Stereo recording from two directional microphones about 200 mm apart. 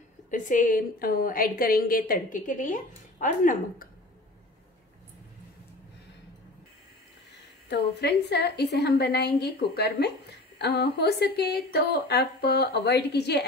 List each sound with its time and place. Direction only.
0.3 s a woman's voice: 40° left (ahead or behind)
7.7 s a woman's voice: 55° left (ahead or behind)